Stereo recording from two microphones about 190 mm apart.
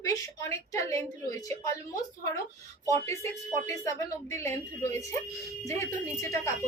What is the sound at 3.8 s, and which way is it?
A woman's voice, 15° left (ahead or behind).